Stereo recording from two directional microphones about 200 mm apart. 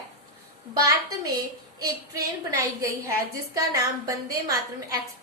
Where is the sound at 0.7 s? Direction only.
20° right (ahead or behind).